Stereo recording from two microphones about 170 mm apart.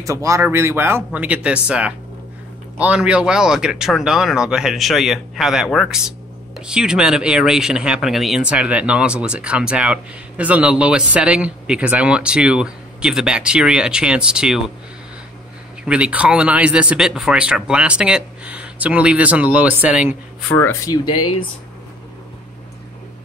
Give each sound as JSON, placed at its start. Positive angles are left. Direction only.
{"t": 0.0, "sound": "speech", "side_deg": -20}
{"t": 15.8, "sound": "speech", "side_deg": -5}
{"t": 20.5, "sound": "speech", "side_deg": 15}